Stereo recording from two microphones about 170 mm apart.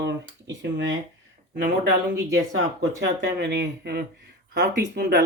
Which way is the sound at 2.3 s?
90° right.